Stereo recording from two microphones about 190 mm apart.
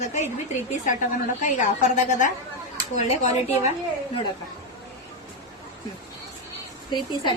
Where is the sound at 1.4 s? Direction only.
40° left (ahead or behind).